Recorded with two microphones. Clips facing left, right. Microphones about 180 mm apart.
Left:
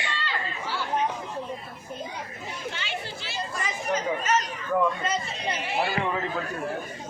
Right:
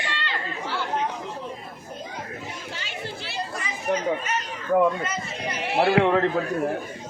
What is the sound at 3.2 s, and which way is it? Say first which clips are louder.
Chatter: right 1 dB; 60° right (ahead or behind).